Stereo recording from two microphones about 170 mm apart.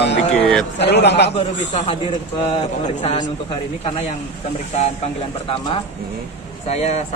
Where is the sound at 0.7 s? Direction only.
85° left.